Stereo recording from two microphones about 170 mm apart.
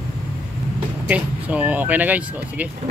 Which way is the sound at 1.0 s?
10° right (ahead or behind).